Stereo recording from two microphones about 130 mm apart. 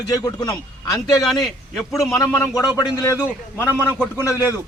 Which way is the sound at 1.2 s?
Centre (ahead or behind).